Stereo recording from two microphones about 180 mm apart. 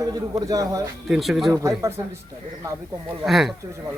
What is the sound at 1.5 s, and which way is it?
Speech, 15° right (ahead or behind).